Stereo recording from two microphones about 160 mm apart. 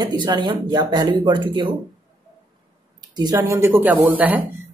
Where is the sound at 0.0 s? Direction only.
25° right (ahead or behind).